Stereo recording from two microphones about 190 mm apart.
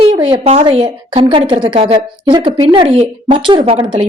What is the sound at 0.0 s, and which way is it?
A woman's voice, 25° right (ahead or behind).